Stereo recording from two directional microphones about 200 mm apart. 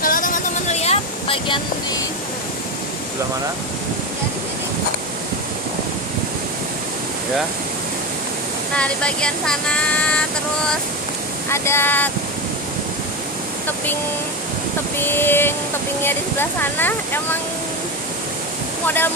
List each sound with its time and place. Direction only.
0.0 s a sound: 45° left (ahead or behind); by 1.6 s 25° left (ahead or behind)
8.7 s speech: 5° left (ahead or behind)
11.4 s speech: 15° left (ahead or behind)
15.0 s speech: 10° left (ahead or behind)